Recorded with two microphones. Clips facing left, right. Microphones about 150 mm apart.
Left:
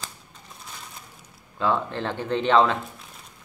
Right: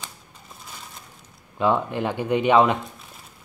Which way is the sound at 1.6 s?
15° right (ahead or behind).